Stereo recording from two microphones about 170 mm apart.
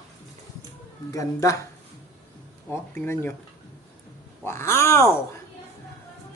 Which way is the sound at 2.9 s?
10° left (ahead or behind).